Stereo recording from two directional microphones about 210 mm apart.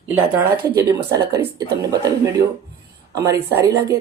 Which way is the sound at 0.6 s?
15° right (ahead or behind).